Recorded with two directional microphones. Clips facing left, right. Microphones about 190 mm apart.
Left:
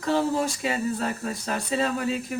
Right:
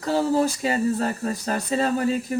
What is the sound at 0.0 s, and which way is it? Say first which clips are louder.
Speech: right 3 dB; 35° right (ahead or behind).